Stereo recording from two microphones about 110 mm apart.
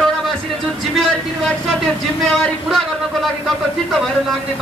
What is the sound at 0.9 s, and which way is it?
A man's voice, 5° left (ahead or behind).